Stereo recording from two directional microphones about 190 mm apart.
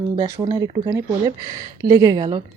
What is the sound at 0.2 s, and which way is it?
Speech, 20° right (ahead or behind).